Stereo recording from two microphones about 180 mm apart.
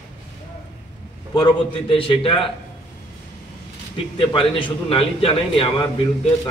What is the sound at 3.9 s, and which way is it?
A man's voice, 30° left (ahead or behind).